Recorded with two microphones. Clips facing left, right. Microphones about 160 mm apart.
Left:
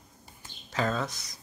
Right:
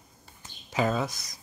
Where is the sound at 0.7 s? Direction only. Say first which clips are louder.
Right 3 dB; 10° right (ahead or behind).